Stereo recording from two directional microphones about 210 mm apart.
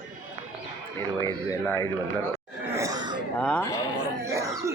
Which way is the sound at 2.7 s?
15° right (ahead or behind).